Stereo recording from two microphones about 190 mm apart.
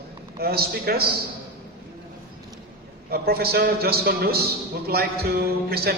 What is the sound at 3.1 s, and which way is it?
A man's voice, 55° right (ahead or behind).